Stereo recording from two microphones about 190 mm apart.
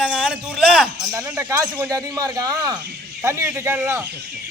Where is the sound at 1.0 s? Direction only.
20° right (ahead or behind).